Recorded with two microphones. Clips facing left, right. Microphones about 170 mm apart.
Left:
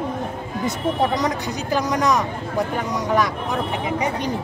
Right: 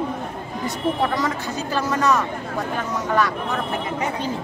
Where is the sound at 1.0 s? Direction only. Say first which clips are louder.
Left 2 dB; 20° left (ahead or behind).